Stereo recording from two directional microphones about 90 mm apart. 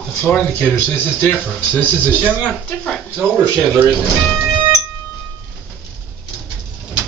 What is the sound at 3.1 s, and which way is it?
Speech, 15° right (ahead or behind).